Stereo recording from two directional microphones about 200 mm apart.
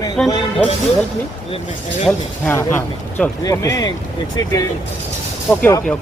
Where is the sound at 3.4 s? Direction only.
20° left (ahead or behind).